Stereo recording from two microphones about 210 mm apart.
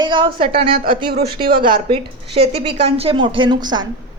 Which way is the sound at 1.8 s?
25° right (ahead or behind).